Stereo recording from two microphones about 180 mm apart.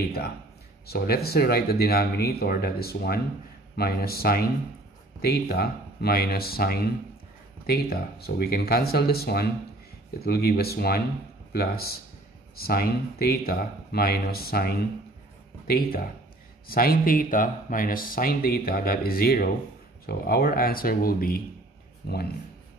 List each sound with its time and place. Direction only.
0.8 s speech: 60° left (ahead or behind)